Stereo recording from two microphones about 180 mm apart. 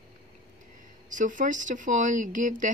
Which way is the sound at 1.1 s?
45° right (ahead or behind).